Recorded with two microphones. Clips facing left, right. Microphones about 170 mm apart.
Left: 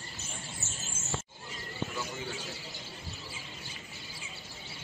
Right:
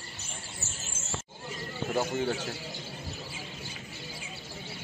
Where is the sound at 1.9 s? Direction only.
55° right (ahead or behind).